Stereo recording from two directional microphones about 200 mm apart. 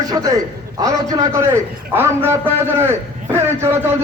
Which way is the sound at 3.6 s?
15° right (ahead or behind).